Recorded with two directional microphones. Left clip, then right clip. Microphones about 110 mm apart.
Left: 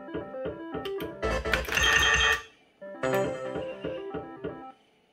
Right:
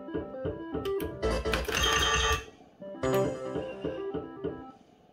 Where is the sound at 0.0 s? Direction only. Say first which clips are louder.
Even; centre (ahead or behind).